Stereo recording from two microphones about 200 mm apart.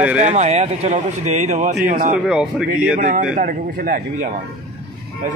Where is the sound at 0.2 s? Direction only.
35° right (ahead or behind).